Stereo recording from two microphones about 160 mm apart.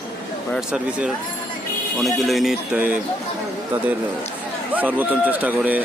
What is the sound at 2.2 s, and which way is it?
Speech, centre (ahead or behind).